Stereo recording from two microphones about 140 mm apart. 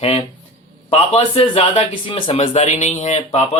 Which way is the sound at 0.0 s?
40° left (ahead or behind).